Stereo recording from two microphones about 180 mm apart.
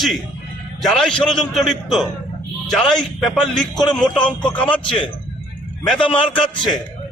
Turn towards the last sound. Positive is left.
turn(degrees=25)  # may be behind; listen again after turning